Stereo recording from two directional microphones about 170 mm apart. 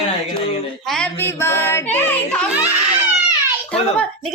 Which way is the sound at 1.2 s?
15° left (ahead or behind).